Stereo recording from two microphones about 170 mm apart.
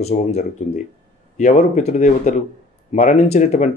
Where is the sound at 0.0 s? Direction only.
40° left (ahead or behind).